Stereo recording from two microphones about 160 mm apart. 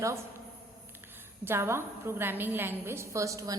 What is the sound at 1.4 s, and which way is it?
A woman's voice, 15° right (ahead or behind).